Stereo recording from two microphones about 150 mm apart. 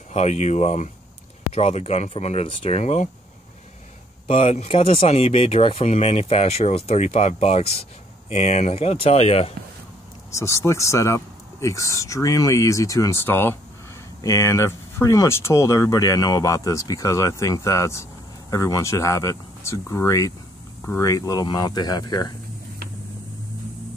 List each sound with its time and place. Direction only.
0.1 s speech: 50° left (ahead or behind)
4.3 s speech: 45° left (ahead or behind)
10.3 s speech: 20° left (ahead or behind)